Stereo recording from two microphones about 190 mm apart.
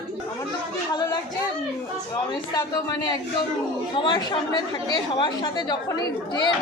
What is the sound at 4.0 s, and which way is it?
Speech, 25° left (ahead or behind).